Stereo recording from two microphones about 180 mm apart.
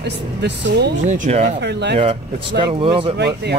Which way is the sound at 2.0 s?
25° right (ahead or behind).